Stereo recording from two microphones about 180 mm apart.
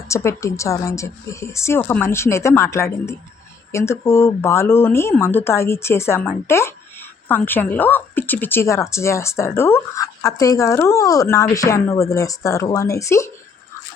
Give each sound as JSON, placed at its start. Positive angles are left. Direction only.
{"t": 0.1, "sound": "a woman's voice", "side_deg": 15}